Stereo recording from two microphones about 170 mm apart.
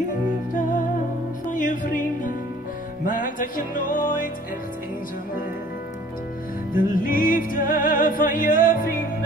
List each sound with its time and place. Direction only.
1.5 s music: 50° left (ahead or behind)
6.7 s music: 55° left (ahead or behind)